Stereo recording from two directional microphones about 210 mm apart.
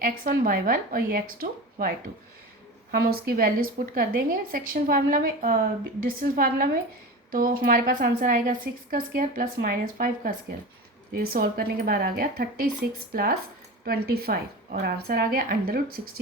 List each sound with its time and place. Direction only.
0.0 s speech: 45° right (ahead or behind)
2.9 s speech: 45° right (ahead or behind)
13.8 s speech: 45° right (ahead or behind)